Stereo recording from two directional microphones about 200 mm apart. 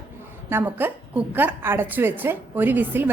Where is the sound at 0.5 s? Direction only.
10° right (ahead or behind).